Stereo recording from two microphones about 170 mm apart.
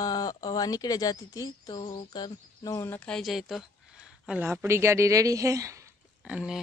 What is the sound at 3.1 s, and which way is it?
Speech, centre (ahead or behind).